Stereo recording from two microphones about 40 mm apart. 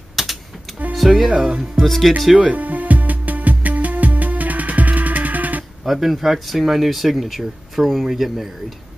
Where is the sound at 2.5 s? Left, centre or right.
Right.